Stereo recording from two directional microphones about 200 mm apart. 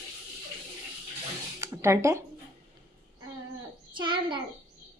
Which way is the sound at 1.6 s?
15° right (ahead or behind).